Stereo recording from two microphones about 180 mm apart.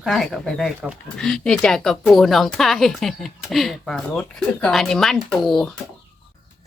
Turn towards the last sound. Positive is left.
turn(degrees=0)  # may be behind; listen again after turning